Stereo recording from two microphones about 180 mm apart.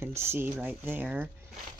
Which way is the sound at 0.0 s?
15° right (ahead or behind).